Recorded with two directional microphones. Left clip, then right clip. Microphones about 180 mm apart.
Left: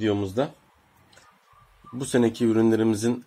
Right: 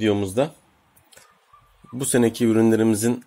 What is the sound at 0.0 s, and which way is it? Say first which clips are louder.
Speech: right 4 dB; 45° right (ahead or behind).